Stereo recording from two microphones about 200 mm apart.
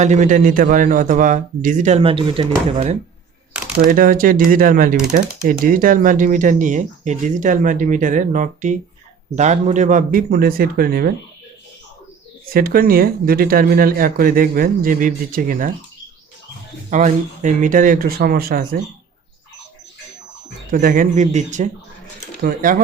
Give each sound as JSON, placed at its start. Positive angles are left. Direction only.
{"t": 0.0, "sound": "speech", "side_deg": -35}
{"t": 3.8, "sound": "speech", "side_deg": -45}
{"t": 12.5, "sound": "speech", "side_deg": -45}
{"t": 16.9, "sound": "speech", "side_deg": -40}
{"t": 20.7, "sound": "speech", "side_deg": -40}